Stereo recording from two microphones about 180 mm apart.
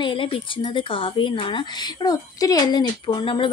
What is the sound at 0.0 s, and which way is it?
Speech, 30° left (ahead or behind).